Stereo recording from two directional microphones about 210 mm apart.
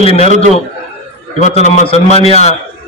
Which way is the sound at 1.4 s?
35° left (ahead or behind).